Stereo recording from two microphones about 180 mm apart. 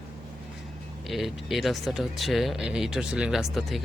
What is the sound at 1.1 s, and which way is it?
Speech, centre (ahead or behind).